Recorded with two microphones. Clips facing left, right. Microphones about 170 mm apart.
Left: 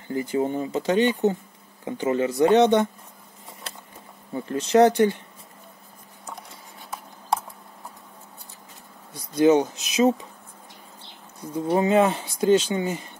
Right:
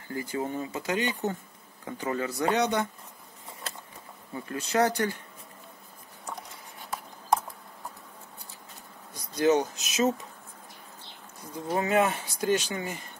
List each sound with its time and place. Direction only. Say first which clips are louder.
0.1 s speech: left 7 dB; 25° left (ahead or behind)
4.5 s speech: left 9 dB; 25° left (ahead or behind)
9.1 s speech: left 6 dB; 25° left (ahead or behind)
11.7 s speech: left 6 dB; 25° left (ahead or behind)